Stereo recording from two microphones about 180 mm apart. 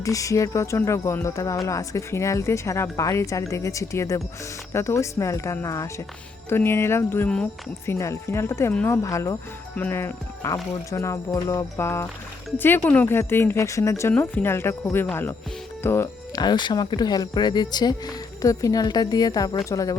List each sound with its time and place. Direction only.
0.0 s speech: 20° left (ahead or behind)